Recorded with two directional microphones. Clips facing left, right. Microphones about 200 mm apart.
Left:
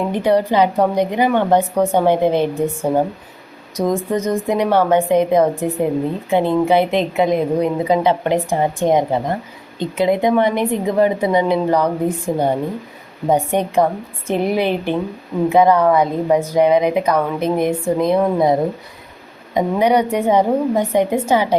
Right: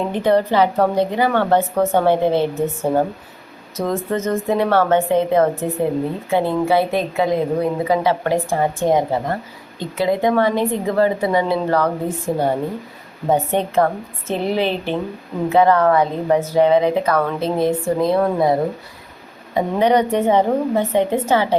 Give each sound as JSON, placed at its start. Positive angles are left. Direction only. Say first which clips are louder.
{"t": 0.1, "sound": "speech", "louder": "even", "side_deg": 10}
{"t": 3.8, "sound": "a woman's voice", "louder": "left 3 dB", "side_deg": 15}